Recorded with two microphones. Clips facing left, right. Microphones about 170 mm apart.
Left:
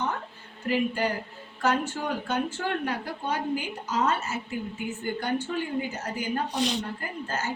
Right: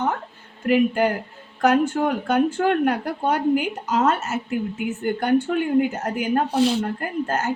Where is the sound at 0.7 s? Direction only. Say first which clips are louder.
Right 8 dB; 50° right (ahead or behind).